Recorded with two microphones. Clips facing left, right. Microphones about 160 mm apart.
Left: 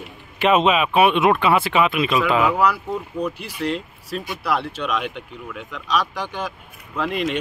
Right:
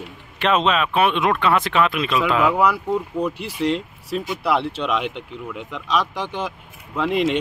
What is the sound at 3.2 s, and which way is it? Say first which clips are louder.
Speech: right 2 dB; 20° right (ahead or behind).